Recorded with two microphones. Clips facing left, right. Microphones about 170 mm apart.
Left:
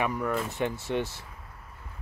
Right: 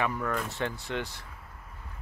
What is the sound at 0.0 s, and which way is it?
Speech, 15° left (ahead or behind).